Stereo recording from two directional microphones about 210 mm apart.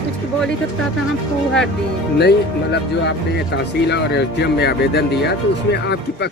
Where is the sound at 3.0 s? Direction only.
55° left (ahead or behind).